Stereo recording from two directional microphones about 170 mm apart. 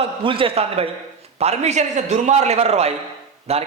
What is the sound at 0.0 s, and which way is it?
Speech, 30° right (ahead or behind).